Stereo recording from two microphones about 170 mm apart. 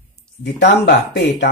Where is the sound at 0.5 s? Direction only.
85° left.